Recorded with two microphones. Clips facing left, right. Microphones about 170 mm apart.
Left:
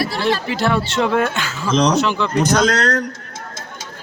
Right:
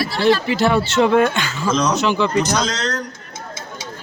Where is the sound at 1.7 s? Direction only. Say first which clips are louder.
Left 3 dB; 65° left (ahead or behind).